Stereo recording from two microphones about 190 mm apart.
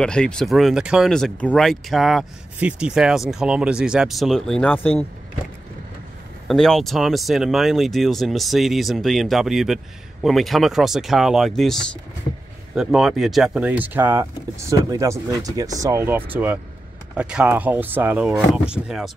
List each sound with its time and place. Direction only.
0.0 s speech: 5° left (ahead or behind)
6.4 s speech: centre (ahead or behind)